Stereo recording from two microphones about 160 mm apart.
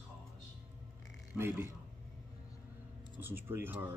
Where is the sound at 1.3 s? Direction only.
15° right (ahead or behind).